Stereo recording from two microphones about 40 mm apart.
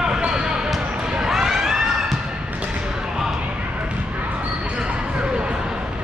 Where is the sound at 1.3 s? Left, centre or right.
Centre.